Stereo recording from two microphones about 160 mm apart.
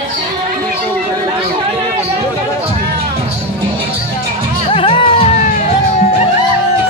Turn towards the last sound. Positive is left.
turn(degrees=35)  # may be behind; listen again after turning